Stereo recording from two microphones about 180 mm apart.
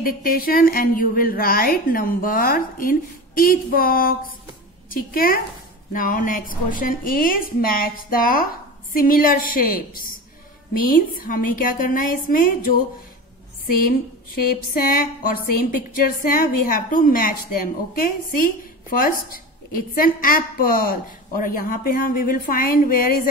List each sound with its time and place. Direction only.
0.0 s a woman's voice: 50° left (ahead or behind)
14.5 s a woman's voice: 55° left (ahead or behind)